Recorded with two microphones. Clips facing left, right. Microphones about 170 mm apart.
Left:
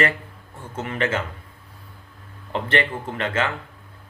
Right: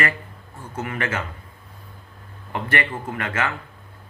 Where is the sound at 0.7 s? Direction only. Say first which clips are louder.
Left 2 dB; 25° left (ahead or behind).